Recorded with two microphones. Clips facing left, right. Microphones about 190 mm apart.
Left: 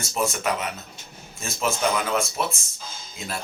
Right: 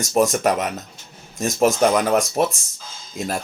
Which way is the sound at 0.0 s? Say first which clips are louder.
Right 8 dB; 40° right (ahead or behind).